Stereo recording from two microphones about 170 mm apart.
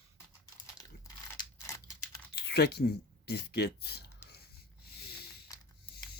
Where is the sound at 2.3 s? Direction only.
75° left (ahead or behind).